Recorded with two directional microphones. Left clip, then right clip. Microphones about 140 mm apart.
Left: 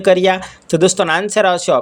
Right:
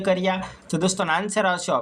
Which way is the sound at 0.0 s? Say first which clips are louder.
Left 10 dB; 50° left (ahead or behind).